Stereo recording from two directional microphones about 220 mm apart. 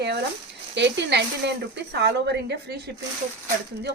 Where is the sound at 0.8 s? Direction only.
50° right (ahead or behind).